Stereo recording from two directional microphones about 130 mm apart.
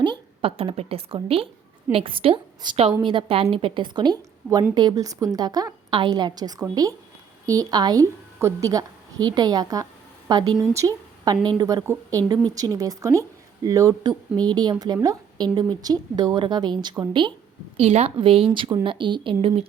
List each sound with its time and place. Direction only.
0.0 s a woman's voice: 40° right (ahead or behind)
17.7 s a woman's voice: 50° right (ahead or behind)